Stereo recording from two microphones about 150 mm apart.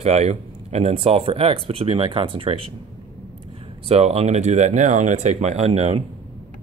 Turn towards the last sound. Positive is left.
turn(degrees=-45)  # may be behind; listen again after turning